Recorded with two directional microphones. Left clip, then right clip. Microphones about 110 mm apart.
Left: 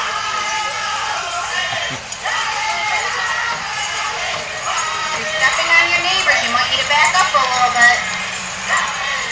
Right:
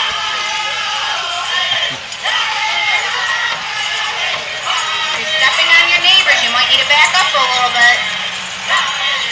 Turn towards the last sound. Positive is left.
turn(degrees=-15)  # may be behind; listen again after turning